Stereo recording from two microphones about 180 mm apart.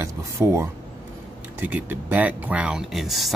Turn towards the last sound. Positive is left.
turn(degrees=0)  # may be behind; listen again after turning